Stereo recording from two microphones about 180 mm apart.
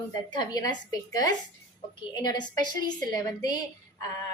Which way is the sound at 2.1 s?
25° left (ahead or behind).